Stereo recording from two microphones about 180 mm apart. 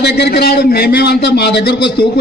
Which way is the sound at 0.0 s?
65° left (ahead or behind).